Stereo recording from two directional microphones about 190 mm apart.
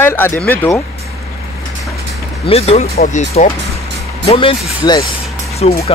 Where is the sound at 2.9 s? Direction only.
50° left (ahead or behind).